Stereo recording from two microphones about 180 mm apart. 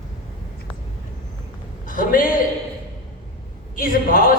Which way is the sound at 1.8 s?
50° left (ahead or behind).